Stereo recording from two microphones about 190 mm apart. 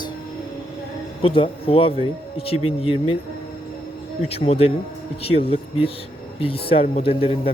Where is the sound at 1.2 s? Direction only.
30° left (ahead or behind).